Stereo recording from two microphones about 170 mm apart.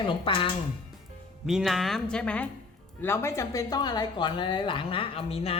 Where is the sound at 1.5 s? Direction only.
Centre (ahead or behind).